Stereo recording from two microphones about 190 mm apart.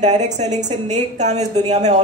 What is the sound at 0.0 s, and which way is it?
A man's voice, 35° right (ahead or behind).